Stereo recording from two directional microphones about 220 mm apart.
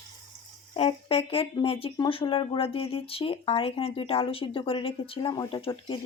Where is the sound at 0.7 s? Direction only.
25° left (ahead or behind).